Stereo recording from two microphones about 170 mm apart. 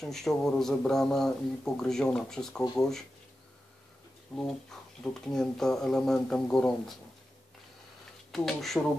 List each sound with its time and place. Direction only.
0.0 s speech: centre (ahead or behind)
4.4 s speech: 5° left (ahead or behind)
8.3 s speech: centre (ahead or behind)